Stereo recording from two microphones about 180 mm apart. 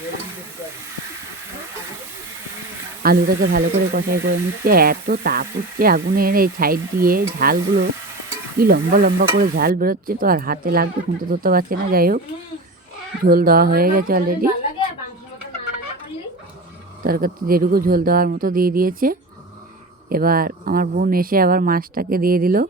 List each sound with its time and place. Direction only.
3.0 s speech: 55° right (ahead or behind)
13.2 s speech: 55° right (ahead or behind)
17.0 s speech: 55° right (ahead or behind)